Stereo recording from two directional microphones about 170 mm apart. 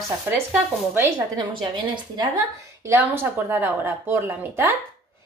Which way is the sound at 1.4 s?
30° right (ahead or behind).